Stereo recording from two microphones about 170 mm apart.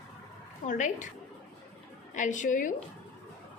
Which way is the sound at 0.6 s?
45° left (ahead or behind).